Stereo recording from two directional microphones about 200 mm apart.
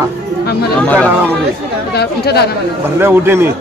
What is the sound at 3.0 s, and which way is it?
Speech, 10° right (ahead or behind).